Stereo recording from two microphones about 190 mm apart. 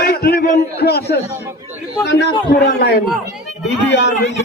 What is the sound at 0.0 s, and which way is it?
A man's voice, 55° left (ahead or behind).